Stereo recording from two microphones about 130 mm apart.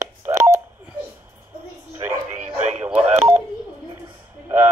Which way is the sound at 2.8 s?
10° right (ahead or behind).